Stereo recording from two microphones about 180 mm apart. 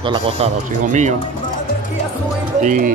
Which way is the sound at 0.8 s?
40° right (ahead or behind).